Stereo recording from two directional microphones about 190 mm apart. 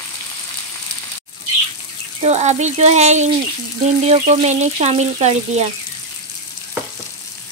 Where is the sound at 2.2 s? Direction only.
35° right (ahead or behind).